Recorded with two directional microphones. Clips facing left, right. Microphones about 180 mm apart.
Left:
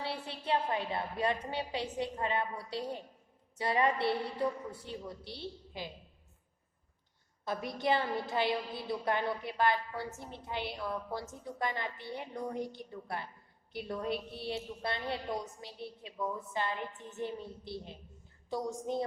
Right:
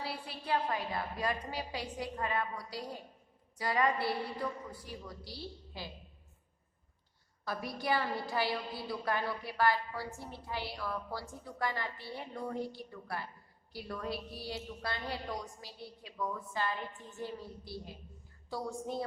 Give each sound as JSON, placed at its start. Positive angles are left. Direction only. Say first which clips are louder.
{"t": 0.0, "sound": "a woman's voice", "louder": "left 3 dB", "side_deg": 25}
{"t": 7.4, "sound": "a woman's voice", "louder": "left 3 dB", "side_deg": 20}